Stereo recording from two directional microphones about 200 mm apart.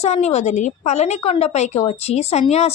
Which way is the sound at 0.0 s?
35° left (ahead or behind).